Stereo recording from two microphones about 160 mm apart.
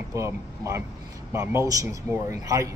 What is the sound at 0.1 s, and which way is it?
Speech, 15° right (ahead or behind).